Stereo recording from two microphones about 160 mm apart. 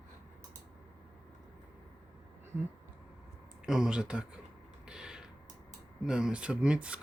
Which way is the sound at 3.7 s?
5° right (ahead or behind).